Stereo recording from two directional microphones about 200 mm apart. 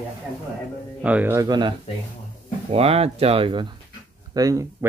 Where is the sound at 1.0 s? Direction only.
5° right (ahead or behind).